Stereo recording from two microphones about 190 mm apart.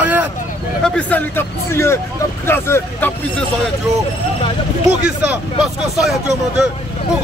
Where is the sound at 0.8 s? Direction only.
5° left (ahead or behind).